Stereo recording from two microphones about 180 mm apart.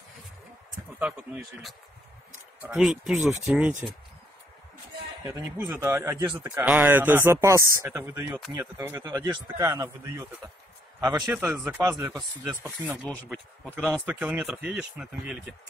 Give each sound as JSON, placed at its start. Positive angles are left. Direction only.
{"t": 0.9, "sound": "speech", "side_deg": -5}
{"t": 5.2, "sound": "speech", "side_deg": -15}
{"t": 8.5, "sound": "a man's voice", "side_deg": -25}
{"t": 11.2, "sound": "speech", "side_deg": -10}
{"t": 13.0, "sound": "speech", "side_deg": 10}
{"t": 14.0, "sound": "speech", "side_deg": -10}